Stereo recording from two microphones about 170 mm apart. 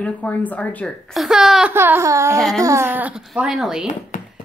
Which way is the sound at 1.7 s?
15° right (ahead or behind).